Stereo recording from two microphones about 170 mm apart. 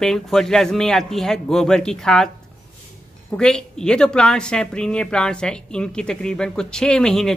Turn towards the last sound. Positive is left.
turn(degrees=5)  # may be behind; listen again after turning